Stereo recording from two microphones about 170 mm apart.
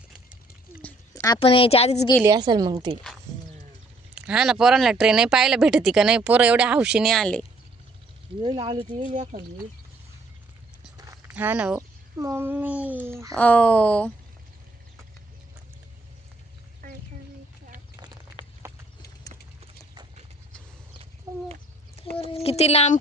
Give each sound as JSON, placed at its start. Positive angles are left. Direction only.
{"t": 1.1, "sound": "a sound", "side_deg": 20}
{"t": 1.4, "sound": "speech", "side_deg": 35}
{"t": 2.2, "sound": "a woman's voice", "side_deg": -25}
{"t": 4.1, "sound": "speech", "side_deg": -5}
{"t": 8.4, "sound": "a woman's voice", "side_deg": -30}
{"t": 9.0, "sound": "speech", "side_deg": -50}
{"t": 10.9, "sound": "horse", "side_deg": -20}
{"t": 11.3, "sound": "a child's voice", "side_deg": -10}
{"t": 13.3, "sound": "speech", "side_deg": 10}
{"t": 18.6, "sound": "clip-clop", "side_deg": -15}
{"t": 22.3, "sound": "speech", "side_deg": 35}